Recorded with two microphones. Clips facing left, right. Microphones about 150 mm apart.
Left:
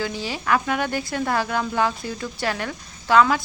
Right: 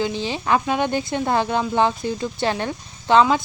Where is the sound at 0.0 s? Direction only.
20° right (ahead or behind).